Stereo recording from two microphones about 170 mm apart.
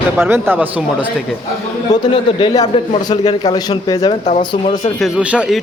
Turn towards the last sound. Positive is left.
turn(degrees=-5)  # may be behind; listen again after turning